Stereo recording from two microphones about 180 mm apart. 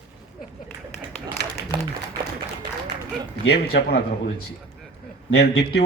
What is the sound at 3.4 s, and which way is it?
Speech, 65° left (ahead or behind).